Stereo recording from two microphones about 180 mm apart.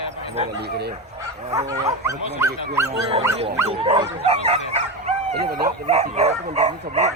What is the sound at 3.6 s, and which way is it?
Dog, 30° right (ahead or behind).